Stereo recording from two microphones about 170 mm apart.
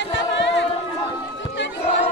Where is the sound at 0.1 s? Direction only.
90° left.